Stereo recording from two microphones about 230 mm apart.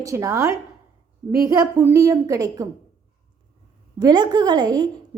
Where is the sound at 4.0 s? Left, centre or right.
Centre.